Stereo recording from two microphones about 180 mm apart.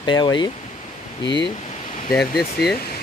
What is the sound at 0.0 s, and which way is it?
Speech, 25° left (ahead or behind).